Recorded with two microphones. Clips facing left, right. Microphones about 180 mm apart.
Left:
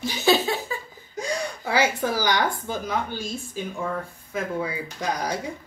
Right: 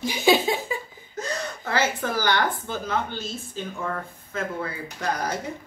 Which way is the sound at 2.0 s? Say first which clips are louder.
Left 1 dB; 10° left (ahead or behind).